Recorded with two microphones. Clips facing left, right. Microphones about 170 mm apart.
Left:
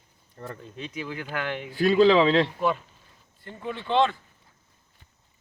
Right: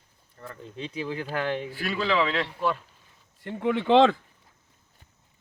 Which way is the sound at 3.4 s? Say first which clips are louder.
Right 8 dB; 80° right.